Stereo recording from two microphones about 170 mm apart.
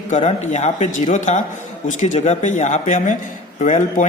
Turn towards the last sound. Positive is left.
turn(degrees=45)  # may be behind; listen again after turning